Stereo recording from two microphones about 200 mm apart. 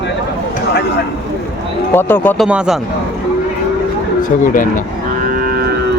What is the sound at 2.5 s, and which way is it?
Speech, 5° right (ahead or behind).